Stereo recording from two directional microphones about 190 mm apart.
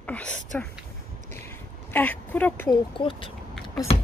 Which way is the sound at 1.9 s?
10° left (ahead or behind).